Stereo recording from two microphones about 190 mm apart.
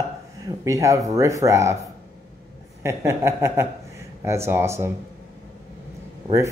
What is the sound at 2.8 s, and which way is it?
Speech, 15° right (ahead or behind).